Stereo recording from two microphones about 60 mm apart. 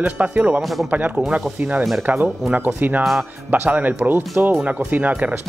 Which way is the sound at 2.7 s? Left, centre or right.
Right.